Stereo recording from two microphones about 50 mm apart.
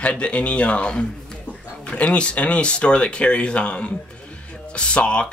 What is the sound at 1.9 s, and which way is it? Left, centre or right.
Speech, left.